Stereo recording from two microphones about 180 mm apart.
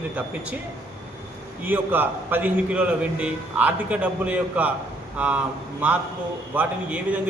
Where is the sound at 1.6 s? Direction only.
10° right (ahead or behind).